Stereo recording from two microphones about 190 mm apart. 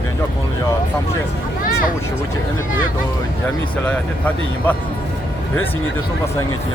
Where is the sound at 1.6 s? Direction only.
45° left (ahead or behind).